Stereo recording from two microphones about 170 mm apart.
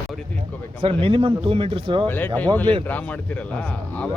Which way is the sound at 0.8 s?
35° right (ahead or behind).